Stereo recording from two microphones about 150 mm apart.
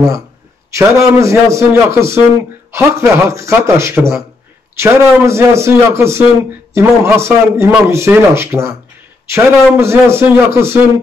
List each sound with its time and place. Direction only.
0.7 s a man's voice: 20° right (ahead or behind)